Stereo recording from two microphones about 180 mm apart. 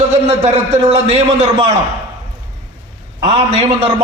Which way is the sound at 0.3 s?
35° right (ahead or behind).